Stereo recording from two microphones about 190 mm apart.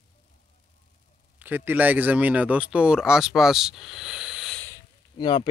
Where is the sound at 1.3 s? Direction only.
10° right (ahead or behind).